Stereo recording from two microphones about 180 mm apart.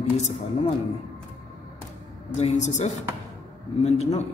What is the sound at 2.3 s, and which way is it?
A man's voice, 40° left (ahead or behind).